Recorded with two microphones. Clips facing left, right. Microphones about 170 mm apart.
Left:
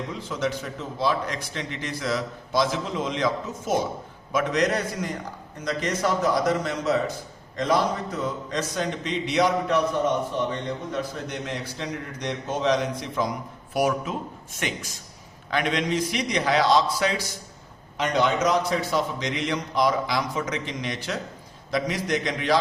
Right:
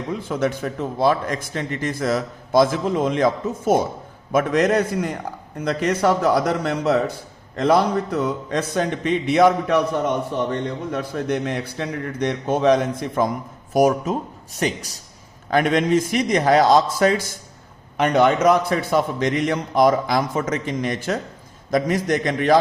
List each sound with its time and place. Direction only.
0.2 s a man's voice: 55° right (ahead or behind)
13.7 s a man's voice: 40° right (ahead or behind)
15.4 s a man's voice: 50° right (ahead or behind)